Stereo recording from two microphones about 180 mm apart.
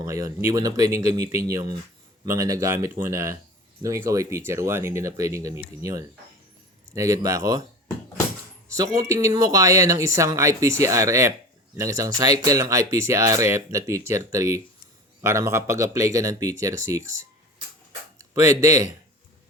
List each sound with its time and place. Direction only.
0.0 s speech: 15° right (ahead or behind)
9.0 s speech: 20° right (ahead or behind)
18.2 s speech: 15° right (ahead or behind)